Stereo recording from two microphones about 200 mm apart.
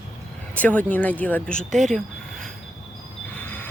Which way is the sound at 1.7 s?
Centre (ahead or behind).